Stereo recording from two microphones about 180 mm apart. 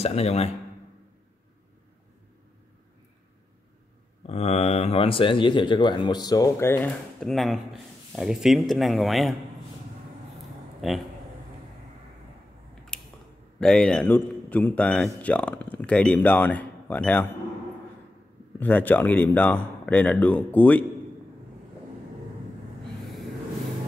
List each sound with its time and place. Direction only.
0.0 s speech: 35° left (ahead or behind)
4.3 s speech: 35° left (ahead or behind); by 9.4 s centre (ahead or behind)
10.8 s a man's voice: centre (ahead or behind)
12.9 s a sound: 5° left (ahead or behind)
13.6 s a man's voice: 5° left (ahead or behind)
18.6 s a man's voice: 10° left (ahead or behind)